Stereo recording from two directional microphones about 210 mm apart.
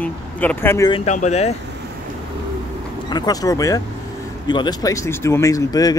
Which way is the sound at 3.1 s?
20° left (ahead or behind).